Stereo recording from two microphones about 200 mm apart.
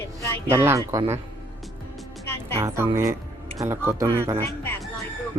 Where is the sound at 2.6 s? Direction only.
15° right (ahead or behind).